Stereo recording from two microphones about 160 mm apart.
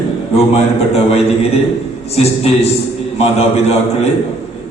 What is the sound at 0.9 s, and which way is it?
A man's voice, 40° left (ahead or behind).